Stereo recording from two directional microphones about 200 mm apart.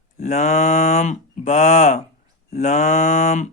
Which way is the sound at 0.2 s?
35° left (ahead or behind).